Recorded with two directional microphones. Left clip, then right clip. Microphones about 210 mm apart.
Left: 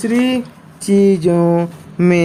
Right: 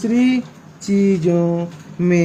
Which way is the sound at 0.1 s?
45° left (ahead or behind).